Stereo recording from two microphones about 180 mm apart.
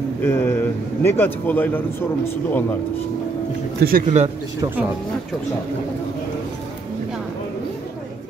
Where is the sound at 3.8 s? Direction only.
50° right (ahead or behind).